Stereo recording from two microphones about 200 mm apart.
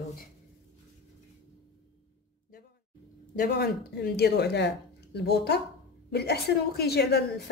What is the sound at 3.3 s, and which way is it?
A woman's voice, 55° left (ahead or behind).